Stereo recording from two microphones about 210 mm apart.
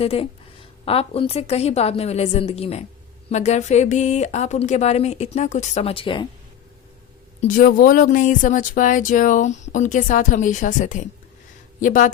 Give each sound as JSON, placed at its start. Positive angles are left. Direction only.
{"t": 0.0, "sound": "a woman's voice", "side_deg": 30}
{"t": 7.4, "sound": "speech", "side_deg": 40}